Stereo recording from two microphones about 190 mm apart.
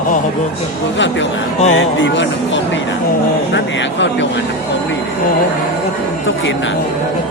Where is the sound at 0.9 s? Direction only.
75° left (ahead or behind).